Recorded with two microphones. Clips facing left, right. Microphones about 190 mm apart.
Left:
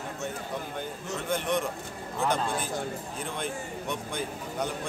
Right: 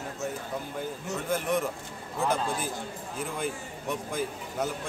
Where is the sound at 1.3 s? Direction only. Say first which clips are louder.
Even; 5° right (ahead or behind).